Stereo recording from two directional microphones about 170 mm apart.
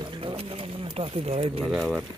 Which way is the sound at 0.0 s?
30° right (ahead or behind).